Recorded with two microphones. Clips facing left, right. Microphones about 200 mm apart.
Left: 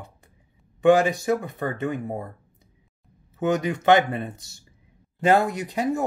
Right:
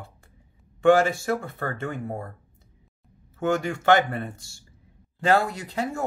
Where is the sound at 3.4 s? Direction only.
20° left (ahead or behind).